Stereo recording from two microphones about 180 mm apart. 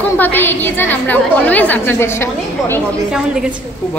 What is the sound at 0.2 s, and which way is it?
A woman's voice, 10° left (ahead or behind).